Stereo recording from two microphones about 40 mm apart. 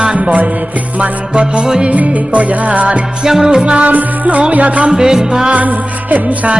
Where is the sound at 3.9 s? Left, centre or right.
Right.